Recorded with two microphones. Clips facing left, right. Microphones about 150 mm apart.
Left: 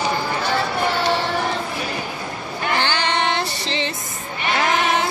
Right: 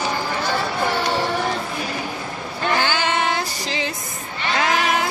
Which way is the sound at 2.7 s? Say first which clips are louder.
Even; 10° right (ahead or behind).